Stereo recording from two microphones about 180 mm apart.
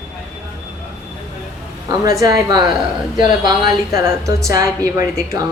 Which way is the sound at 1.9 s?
25° right (ahead or behind).